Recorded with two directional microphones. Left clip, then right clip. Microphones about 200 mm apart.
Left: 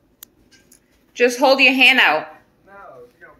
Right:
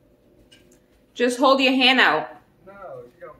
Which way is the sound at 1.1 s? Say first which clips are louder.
Left 3 dB; 15° right (ahead or behind).